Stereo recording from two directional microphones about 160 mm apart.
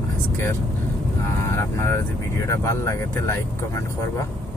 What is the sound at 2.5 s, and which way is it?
Speech, 20° left (ahead or behind).